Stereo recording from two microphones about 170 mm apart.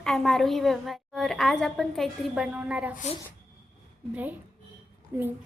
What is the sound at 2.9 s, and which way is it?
Speech, 45° left (ahead or behind).